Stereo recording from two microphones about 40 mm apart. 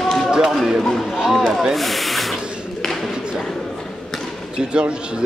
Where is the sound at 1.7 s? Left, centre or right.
Centre.